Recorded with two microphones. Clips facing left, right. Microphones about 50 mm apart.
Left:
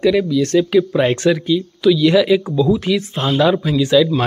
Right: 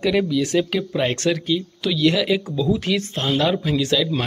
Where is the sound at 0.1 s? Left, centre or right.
Centre.